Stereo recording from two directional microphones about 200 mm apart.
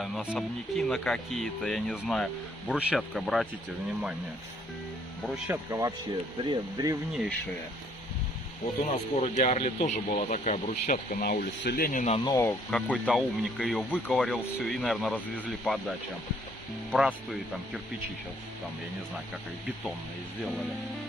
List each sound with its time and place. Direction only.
0.0 s speech: centre (ahead or behind)
5.2 s speech: 5° right (ahead or behind)
5.7 s speech: 15° right (ahead or behind)
8.9 s speech: 35° left (ahead or behind)
12.1 s speech: 15° left (ahead or behind)
16.9 s speech: 5° right (ahead or behind)